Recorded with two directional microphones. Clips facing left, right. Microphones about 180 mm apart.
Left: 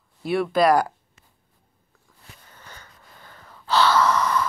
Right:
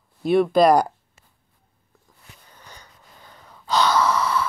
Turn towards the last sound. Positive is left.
turn(degrees=-10)  # may be behind; listen again after turning